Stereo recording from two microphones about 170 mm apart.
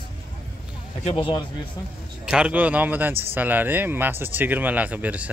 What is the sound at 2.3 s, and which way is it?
Speech, 5° right (ahead or behind).